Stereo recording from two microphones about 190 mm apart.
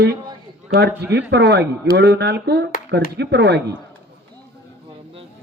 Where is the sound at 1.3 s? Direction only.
65° right (ahead or behind).